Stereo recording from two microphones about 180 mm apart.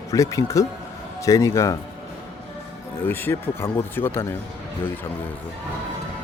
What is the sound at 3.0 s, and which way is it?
Speech, 10° left (ahead or behind).